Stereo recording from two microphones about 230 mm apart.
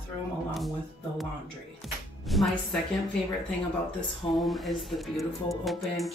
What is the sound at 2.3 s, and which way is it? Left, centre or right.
Speech, centre.